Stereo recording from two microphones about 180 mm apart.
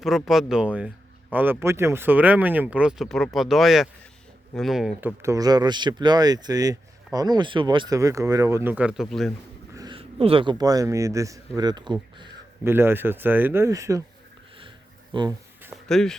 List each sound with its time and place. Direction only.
0.0 s speech: centre (ahead or behind)
9.7 s speech: 25° right (ahead or behind)
12.6 s speech: 15° right (ahead or behind)
15.1 s speech: 25° right (ahead or behind)
15.7 s a sound: 5° left (ahead or behind)